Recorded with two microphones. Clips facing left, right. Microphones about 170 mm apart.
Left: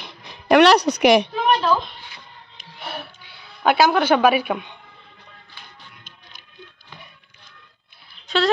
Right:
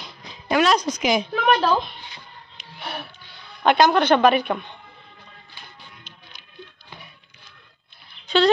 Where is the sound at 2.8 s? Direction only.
5° left (ahead or behind).